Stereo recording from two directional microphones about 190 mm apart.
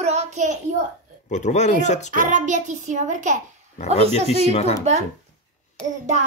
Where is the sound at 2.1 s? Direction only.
45° right (ahead or behind).